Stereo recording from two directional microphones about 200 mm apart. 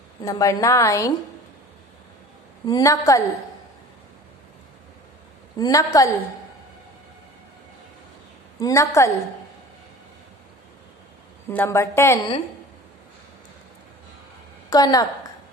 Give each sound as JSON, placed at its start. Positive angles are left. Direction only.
{"t": 0.2, "sound": "a woman's voice", "side_deg": 15}
{"t": 2.6, "sound": "a woman's voice", "side_deg": 15}
{"t": 5.6, "sound": "a woman's voice", "side_deg": 15}
{"t": 8.5, "sound": "a woman's voice", "side_deg": 15}
{"t": 11.4, "sound": "a woman's voice", "side_deg": 10}
{"t": 14.7, "sound": "a woman's voice", "side_deg": 20}